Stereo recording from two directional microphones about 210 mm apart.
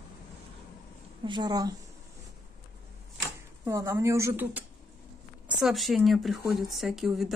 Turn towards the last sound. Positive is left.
turn(degrees=0)  # may be behind; listen again after turning